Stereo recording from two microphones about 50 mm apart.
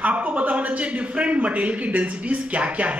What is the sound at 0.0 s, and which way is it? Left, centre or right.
A man's voice, right.